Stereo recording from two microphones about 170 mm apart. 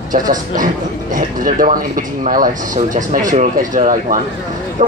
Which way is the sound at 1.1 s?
55° right (ahead or behind).